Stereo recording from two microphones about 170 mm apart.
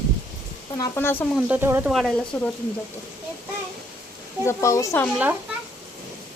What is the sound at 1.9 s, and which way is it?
Speech, centre (ahead or behind).